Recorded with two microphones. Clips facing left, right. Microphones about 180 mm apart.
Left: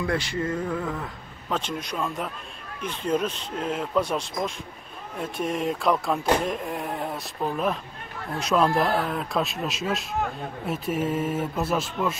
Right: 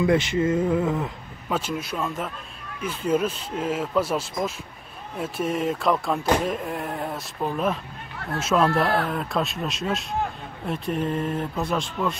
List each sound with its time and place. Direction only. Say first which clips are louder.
0.0 s speech: right 6 dB; 20° right (ahead or behind)
1.5 s speech: right 2 dB; 5° right (ahead or behind)